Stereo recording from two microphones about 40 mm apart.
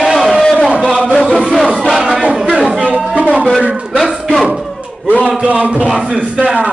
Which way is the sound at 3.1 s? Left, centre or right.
Right.